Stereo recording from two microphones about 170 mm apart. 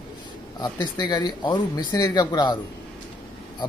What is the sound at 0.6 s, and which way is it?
Speech, 25° left (ahead or behind).